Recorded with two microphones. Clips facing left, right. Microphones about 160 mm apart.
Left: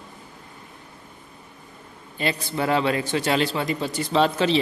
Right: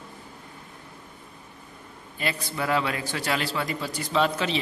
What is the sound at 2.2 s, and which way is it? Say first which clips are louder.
A man's voice: left 4 dB; 30° left (ahead or behind).